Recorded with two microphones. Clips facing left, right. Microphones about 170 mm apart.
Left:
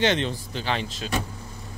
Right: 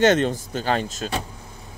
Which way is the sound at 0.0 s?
45° right (ahead or behind).